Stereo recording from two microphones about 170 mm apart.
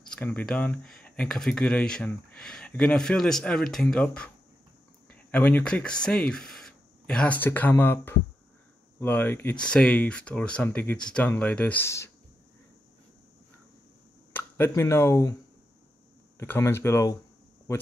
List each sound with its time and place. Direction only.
0.1 s speech: 10° left (ahead or behind)
14.3 s speech: 15° left (ahead or behind)
16.3 s speech: 15° left (ahead or behind)